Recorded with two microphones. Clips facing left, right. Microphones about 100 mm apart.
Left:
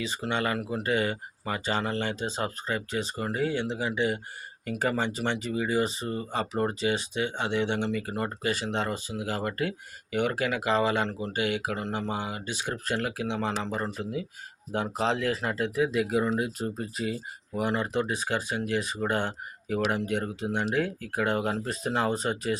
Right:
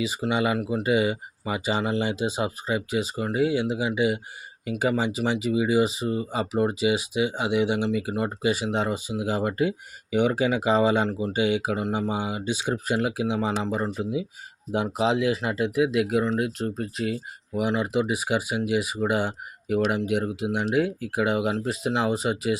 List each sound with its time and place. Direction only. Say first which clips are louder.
0.0 s speech: right 5 dB; 10° right (ahead or behind)